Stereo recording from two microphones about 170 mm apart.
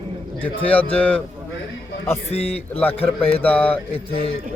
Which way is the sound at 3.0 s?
35° left (ahead or behind).